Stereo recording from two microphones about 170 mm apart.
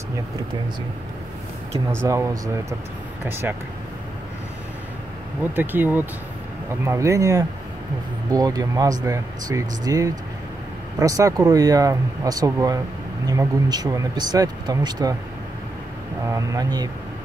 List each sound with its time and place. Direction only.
2.0 s speech: 15° right (ahead or behind)
5.4 s speech: 10° right (ahead or behind)
16.3 s speech: 20° right (ahead or behind)